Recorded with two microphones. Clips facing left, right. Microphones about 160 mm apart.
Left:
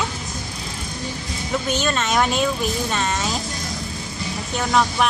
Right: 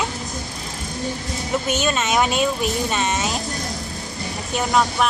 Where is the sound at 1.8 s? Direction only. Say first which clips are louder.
Even; 10° right (ahead or behind).